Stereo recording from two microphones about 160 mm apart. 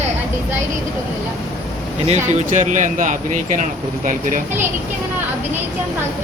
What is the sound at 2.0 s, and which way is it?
Speech, 50° right (ahead or behind).